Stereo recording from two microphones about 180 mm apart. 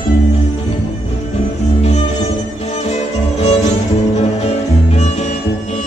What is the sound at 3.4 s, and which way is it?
Music, 35° left (ahead or behind).